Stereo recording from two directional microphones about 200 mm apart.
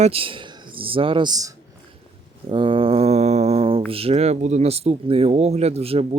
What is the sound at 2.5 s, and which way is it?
Speech, 25° right (ahead or behind).